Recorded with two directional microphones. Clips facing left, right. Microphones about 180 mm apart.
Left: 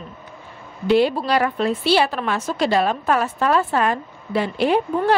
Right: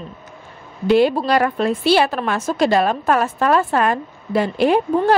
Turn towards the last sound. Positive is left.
turn(degrees=-45)  # may be behind; listen again after turning